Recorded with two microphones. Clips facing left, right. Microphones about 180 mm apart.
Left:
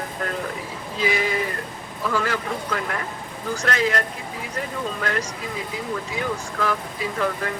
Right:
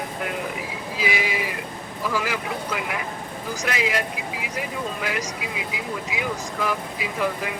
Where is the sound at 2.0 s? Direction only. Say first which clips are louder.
Left 2 dB; 5° right (ahead or behind).